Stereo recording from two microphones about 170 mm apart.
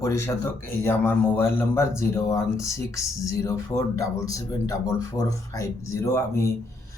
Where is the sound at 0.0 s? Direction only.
15° left (ahead or behind).